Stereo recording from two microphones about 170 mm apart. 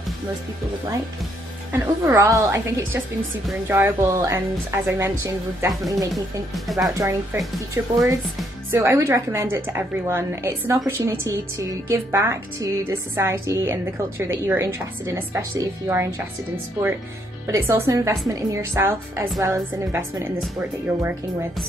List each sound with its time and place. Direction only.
1.7 s a woman's voice: 15° right (ahead or behind)
6.1 s speech: centre (ahead or behind)
7.0 s a woman's voice: 15° right (ahead or behind)
17.5 s a woman's voice: 15° right (ahead or behind)